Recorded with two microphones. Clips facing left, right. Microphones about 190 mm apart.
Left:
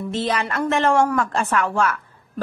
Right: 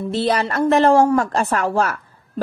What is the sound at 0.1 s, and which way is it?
Speech, 35° right (ahead or behind).